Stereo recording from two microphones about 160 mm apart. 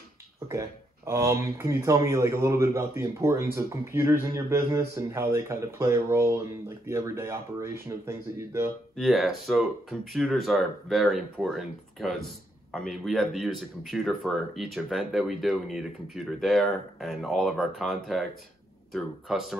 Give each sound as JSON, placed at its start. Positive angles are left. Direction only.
{"t": 0.5, "sound": "speech", "side_deg": -20}
{"t": 8.9, "sound": "speech", "side_deg": 0}